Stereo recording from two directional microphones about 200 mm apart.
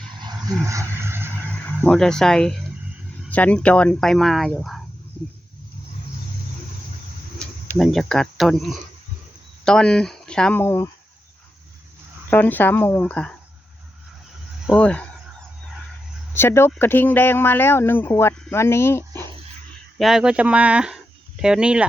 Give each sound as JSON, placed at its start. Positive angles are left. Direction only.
{"t": 0.2, "sound": "vehicle", "side_deg": -20}
{"t": 1.8, "sound": "speech", "side_deg": 5}
{"t": 7.3, "sound": "speech", "side_deg": 0}
{"t": 12.3, "sound": "speech", "side_deg": 10}
{"t": 14.7, "sound": "a sound", "side_deg": 5}
{"t": 16.3, "sound": "speech", "side_deg": 10}
{"t": 20.0, "sound": "speech", "side_deg": 0}